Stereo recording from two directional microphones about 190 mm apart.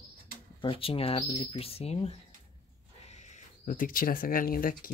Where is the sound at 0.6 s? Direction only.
30° left (ahead or behind); by 4.9 s 50° left (ahead or behind).